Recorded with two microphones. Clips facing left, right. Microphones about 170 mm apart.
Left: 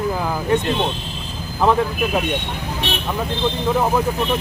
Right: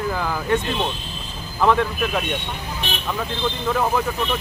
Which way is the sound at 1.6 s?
5° left (ahead or behind).